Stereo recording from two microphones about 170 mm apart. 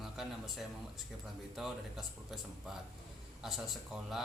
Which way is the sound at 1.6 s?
Centre (ahead or behind).